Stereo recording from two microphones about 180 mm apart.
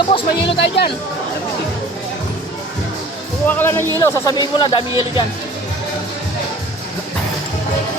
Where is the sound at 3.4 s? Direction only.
10° left (ahead or behind); by 5.2 s 25° left (ahead or behind).